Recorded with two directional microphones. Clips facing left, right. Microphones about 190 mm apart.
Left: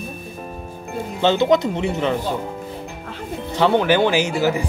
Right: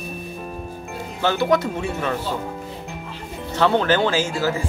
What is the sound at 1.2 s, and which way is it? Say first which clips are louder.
Speech: left 3 dB; 20° left (ahead or behind).